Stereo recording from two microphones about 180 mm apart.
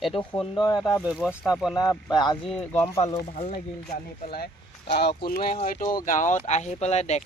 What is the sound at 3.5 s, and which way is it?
Speech, 55° left (ahead or behind).